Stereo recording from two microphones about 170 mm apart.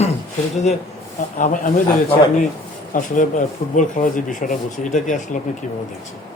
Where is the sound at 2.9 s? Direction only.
50° left (ahead or behind).